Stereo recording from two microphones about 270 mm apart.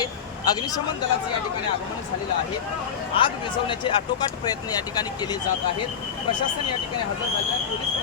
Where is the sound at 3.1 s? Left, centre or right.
Centre.